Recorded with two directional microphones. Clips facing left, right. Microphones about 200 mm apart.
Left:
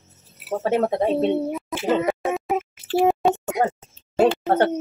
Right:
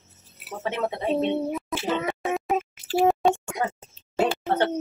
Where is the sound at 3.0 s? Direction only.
Centre (ahead or behind).